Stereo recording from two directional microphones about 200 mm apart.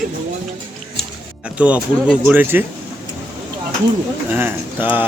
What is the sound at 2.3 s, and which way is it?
Speech, 10° right (ahead or behind).